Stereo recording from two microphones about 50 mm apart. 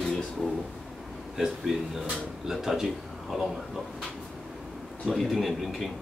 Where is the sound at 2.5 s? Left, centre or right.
Centre.